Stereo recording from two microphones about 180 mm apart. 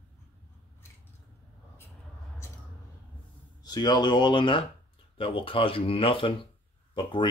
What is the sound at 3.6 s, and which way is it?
Speech, 25° left (ahead or behind).